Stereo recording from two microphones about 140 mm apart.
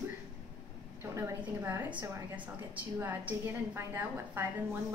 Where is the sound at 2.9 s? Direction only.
15° right (ahead or behind).